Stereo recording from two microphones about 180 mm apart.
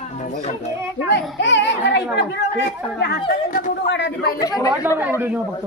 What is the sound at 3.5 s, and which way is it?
Speech, 50° left (ahead or behind).